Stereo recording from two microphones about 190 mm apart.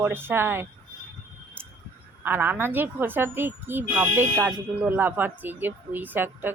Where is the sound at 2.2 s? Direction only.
10° right (ahead or behind).